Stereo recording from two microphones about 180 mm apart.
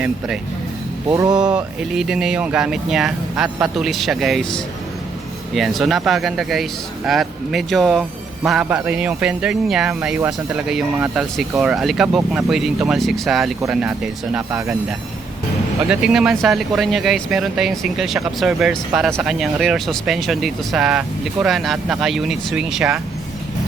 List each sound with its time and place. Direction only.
1.1 s speech: 20° right (ahead or behind)
1.5 s speech: 5° right (ahead or behind)
15.9 s speech: 5° right (ahead or behind)